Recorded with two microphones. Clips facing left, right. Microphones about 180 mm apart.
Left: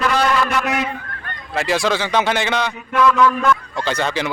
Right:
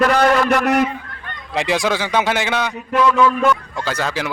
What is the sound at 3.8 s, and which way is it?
Speech, 5° right (ahead or behind).